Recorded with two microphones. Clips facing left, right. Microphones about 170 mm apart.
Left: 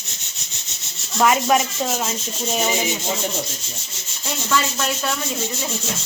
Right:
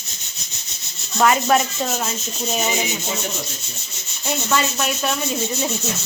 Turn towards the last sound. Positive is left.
turn(degrees=-20)  # may be behind; listen again after turning